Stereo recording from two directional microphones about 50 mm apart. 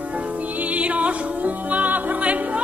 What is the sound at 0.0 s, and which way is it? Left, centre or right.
Music, right.